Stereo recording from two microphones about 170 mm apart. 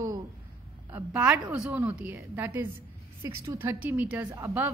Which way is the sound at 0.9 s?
10° right (ahead or behind).